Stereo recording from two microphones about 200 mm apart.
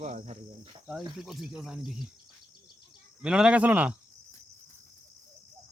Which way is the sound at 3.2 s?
5° right (ahead or behind).